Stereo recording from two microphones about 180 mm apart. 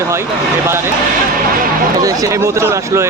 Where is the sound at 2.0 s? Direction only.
20° right (ahead or behind).